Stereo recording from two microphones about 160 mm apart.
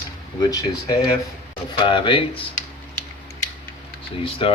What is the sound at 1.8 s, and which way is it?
Speech, 30° left (ahead or behind).